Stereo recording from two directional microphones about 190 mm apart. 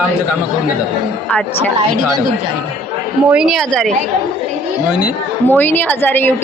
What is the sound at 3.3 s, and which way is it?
Speech, 5° right (ahead or behind).